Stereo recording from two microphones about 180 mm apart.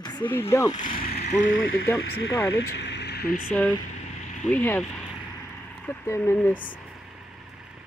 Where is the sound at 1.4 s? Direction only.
90° left.